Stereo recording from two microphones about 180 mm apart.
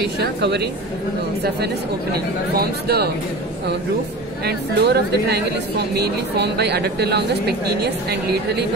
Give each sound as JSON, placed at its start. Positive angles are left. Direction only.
{"t": 0.2, "sound": "a woman's voice", "side_deg": -65}
{"t": 2.5, "sound": "a woman's voice", "side_deg": -60}
{"t": 4.5, "sound": "a woman's voice", "side_deg": -65}